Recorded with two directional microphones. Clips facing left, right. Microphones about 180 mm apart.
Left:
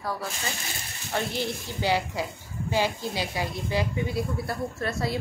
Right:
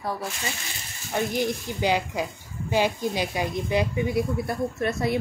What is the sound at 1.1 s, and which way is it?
Speech, 15° right (ahead or behind).